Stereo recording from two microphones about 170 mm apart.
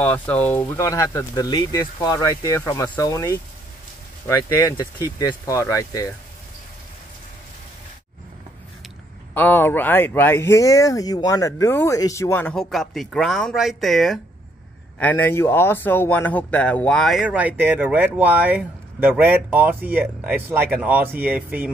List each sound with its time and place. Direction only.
0.0 s speech: 10° left (ahead or behind)
9.3 s speech: 10° left (ahead or behind); by 21.7 s 10° right (ahead or behind)